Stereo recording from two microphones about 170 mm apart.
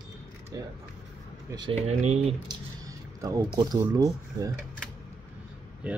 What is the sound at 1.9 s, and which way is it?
Speech, 40° right (ahead or behind).